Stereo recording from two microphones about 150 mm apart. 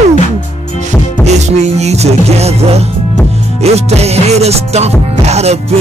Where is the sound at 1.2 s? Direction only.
50° right (ahead or behind).